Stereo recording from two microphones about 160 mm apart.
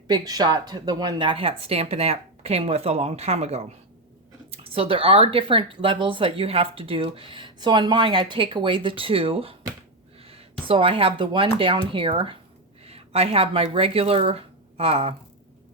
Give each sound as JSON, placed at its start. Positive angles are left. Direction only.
{"t": 0.1, "sound": "speech", "side_deg": -25}